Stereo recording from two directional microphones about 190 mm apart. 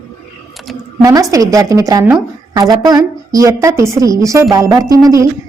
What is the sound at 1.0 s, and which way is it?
A woman's voice, 20° right (ahead or behind).